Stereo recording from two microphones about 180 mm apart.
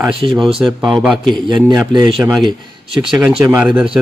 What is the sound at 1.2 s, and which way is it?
Speech, 25° right (ahead or behind).